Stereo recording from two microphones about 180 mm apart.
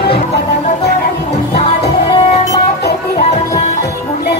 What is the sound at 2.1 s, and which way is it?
Music, 35° left (ahead or behind).